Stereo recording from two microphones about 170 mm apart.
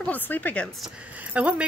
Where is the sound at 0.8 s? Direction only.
5° right (ahead or behind).